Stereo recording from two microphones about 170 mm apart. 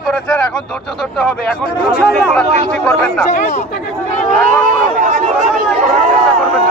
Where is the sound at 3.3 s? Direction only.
45° left (ahead or behind).